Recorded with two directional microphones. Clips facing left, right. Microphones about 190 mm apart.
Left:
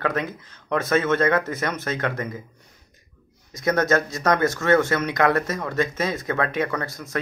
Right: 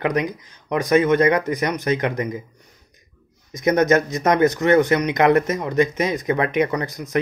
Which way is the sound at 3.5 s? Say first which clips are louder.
Right 4 dB; 20° right (ahead or behind).